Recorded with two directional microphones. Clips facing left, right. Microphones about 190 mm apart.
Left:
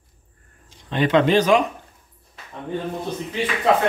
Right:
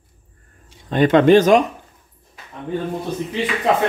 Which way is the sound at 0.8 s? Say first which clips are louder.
Right 5 dB; 45° right (ahead or behind).